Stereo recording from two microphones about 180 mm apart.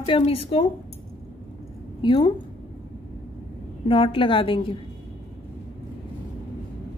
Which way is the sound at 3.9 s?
30° left (ahead or behind).